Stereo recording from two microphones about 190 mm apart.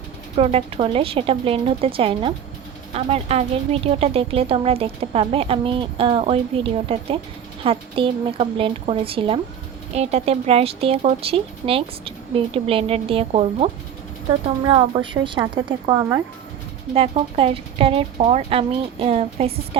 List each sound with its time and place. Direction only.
0.3 s speech: 30° right (ahead or behind)
16.9 s speech: 30° right (ahead or behind)